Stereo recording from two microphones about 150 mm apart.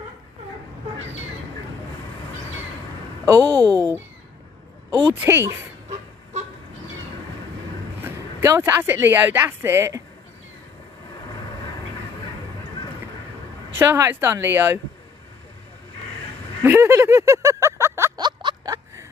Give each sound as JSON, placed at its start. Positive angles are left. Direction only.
{"t": 3.3, "sound": "speech", "side_deg": -15}
{"t": 5.1, "sound": "speech", "side_deg": -15}
{"t": 8.4, "sound": "speech", "side_deg": -15}
{"t": 13.7, "sound": "speech", "side_deg": -20}
{"t": 16.6, "sound": "a sound", "side_deg": -15}
{"t": 18.2, "sound": "a sound", "side_deg": -30}